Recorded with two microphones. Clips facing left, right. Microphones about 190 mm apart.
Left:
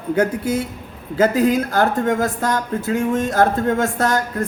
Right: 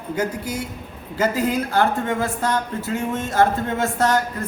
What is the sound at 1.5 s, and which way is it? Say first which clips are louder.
Speech: left 2 dB; 45° left (ahead or behind).